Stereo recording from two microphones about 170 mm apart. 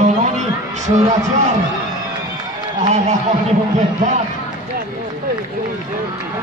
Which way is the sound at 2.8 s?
40° right (ahead or behind).